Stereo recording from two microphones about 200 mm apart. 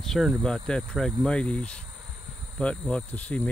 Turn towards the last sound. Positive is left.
turn(degrees=5)  # may be behind; listen again after turning